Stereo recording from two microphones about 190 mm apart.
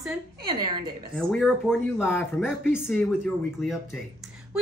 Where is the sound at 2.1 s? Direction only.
10° left (ahead or behind).